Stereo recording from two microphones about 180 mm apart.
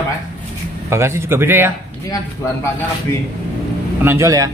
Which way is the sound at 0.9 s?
15° right (ahead or behind).